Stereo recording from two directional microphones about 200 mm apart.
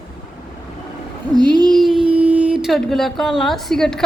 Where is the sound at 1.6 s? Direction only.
Centre (ahead or behind).